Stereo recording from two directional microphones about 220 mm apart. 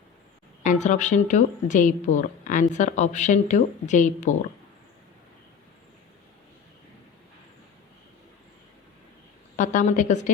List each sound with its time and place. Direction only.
0.6 s speech: 35° left (ahead or behind)
9.6 s speech: 35° left (ahead or behind)